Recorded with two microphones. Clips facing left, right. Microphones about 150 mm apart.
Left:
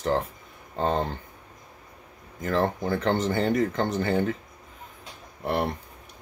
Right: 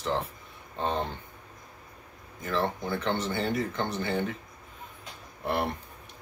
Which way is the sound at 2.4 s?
45° left (ahead or behind).